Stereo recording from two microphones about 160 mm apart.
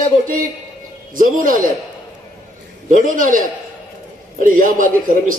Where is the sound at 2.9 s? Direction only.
55° right (ahead or behind).